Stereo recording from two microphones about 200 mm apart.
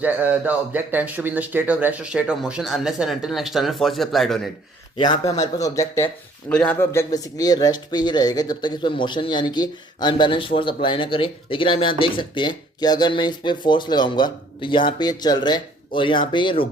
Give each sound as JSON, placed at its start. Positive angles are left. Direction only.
{"t": 0.0, "sound": "speech", "side_deg": -10}
{"t": 4.9, "sound": "speech", "side_deg": 25}